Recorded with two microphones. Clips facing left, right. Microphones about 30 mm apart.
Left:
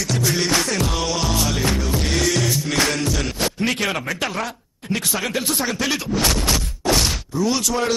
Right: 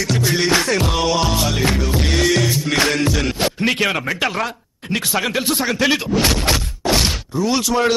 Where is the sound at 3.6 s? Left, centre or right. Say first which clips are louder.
Right 4 dB; right.